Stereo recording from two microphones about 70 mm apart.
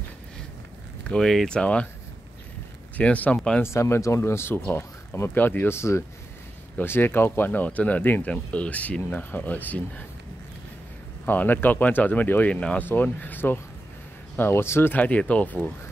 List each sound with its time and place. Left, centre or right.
1.2 s speech: centre
3.0 s speech: centre
3.6 s speech: left
5.8 s speech: left
6.8 s speech: left
8.3 s speech: centre
11.2 s speech: left